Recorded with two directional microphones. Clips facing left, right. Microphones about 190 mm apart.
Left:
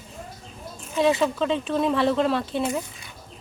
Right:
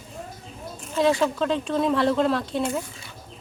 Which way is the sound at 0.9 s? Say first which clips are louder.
Even; centre (ahead or behind).